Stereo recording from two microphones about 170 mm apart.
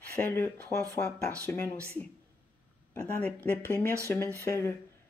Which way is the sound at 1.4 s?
10° left (ahead or behind).